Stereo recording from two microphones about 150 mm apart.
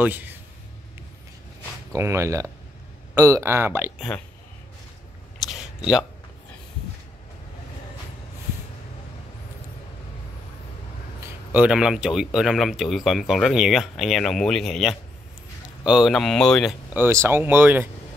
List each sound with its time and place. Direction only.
0.0 s speech: 10° right (ahead or behind)
2.0 s speech: 20° right (ahead or behind)
5.4 s a sound: centre (ahead or behind)
11.5 s speech: 5° right (ahead or behind)
16.9 s speech: 15° right (ahead or behind)